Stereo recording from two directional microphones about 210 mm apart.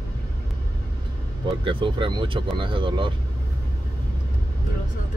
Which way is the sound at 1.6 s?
25° right (ahead or behind).